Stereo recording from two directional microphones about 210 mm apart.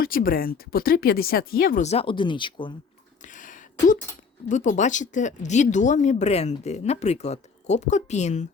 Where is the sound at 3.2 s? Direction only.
40° left (ahead or behind).